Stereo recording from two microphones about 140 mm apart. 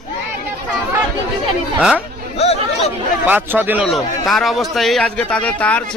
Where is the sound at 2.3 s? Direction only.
50° left (ahead or behind).